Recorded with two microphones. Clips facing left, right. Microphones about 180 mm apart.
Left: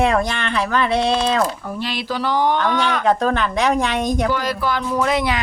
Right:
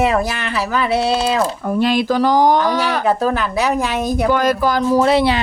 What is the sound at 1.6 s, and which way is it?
Speech, 50° right (ahead or behind).